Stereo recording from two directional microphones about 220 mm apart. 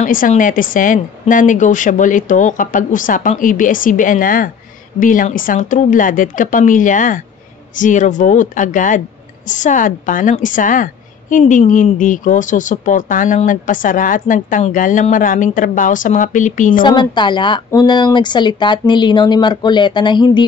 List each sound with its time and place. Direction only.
0.0 s a woman's voice: 35° left (ahead or behind)
16.8 s speech: 20° left (ahead or behind)